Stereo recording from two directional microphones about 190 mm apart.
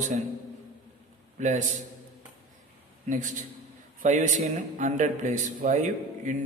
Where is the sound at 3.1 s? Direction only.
40° right (ahead or behind).